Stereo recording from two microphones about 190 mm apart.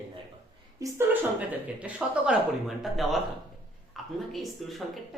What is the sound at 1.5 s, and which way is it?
Speech, 5° right (ahead or behind).